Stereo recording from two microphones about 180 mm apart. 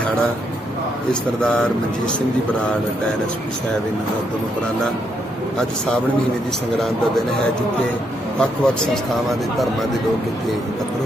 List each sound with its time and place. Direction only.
1.4 s speech: 5° left (ahead or behind)
8.4 s speech: 5° left (ahead or behind)